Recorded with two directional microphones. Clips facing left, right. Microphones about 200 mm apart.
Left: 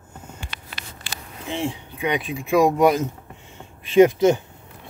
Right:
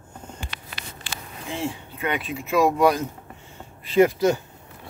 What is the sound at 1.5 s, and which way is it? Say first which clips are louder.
Speech: left 3 dB; 15° left (ahead or behind).